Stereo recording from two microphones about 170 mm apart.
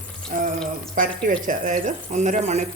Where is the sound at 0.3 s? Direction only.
50° right (ahead or behind).